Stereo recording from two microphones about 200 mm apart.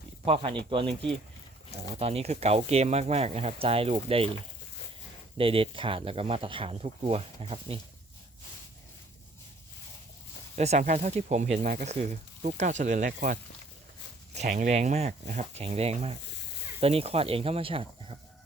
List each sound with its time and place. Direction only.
0.3 s speech: 25° right (ahead or behind)
2.0 s speech: 30° right (ahead or behind)
5.4 s speech: 25° right (ahead or behind)
10.5 s speech: 35° right (ahead or behind)